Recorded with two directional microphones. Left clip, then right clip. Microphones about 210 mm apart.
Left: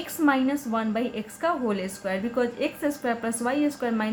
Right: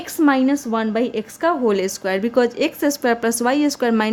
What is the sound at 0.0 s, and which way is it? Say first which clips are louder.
A woman's voice: right 6 dB; 45° right (ahead or behind).